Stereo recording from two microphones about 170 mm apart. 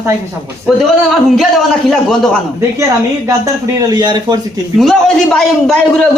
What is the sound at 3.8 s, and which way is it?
Speech, 25° right (ahead or behind).